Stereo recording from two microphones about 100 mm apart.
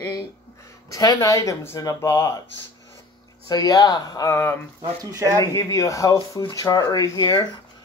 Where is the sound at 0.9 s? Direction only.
35° left (ahead or behind).